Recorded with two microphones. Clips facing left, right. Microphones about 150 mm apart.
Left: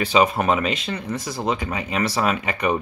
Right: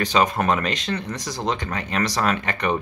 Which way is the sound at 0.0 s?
5° left (ahead or behind).